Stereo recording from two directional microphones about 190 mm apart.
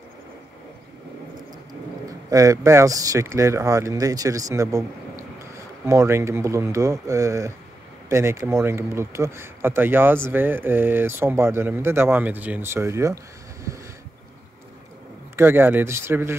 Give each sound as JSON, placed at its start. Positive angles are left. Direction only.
{"t": 2.3, "sound": "speech", "side_deg": -15}
{"t": 5.9, "sound": "speech", "side_deg": -15}
{"t": 15.3, "sound": "speech", "side_deg": -10}